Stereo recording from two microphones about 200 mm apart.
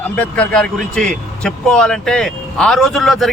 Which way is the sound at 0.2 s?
5° left (ahead or behind).